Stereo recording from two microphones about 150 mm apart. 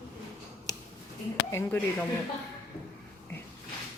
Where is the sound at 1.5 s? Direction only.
10° left (ahead or behind).